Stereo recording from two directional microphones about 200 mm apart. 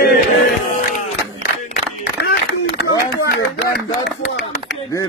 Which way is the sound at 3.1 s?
50° left (ahead or behind).